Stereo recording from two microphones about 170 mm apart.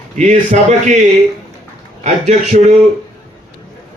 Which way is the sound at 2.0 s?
40° right (ahead or behind).